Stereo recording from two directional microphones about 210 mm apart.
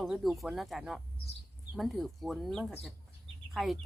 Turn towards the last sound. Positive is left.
turn(degrees=0)  # may be behind; listen again after turning